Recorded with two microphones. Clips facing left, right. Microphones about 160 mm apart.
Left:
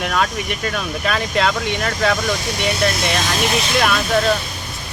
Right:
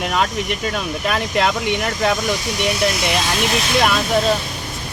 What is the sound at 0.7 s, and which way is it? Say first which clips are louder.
Speech: even; 20° right (ahead or behind).